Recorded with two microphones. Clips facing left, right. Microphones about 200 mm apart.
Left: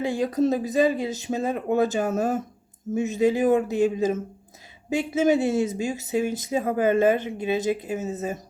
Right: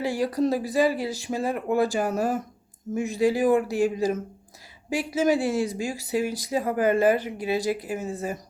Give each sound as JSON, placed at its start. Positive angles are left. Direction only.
{"t": 0.0, "sound": "speech", "side_deg": 20}